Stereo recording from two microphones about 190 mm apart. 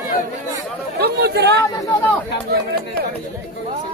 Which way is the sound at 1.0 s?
60° right (ahead or behind).